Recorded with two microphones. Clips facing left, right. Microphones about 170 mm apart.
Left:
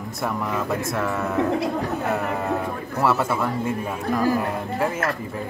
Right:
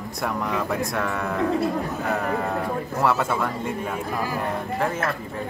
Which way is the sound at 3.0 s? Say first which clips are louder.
Left 2 dB; 5° left (ahead or behind).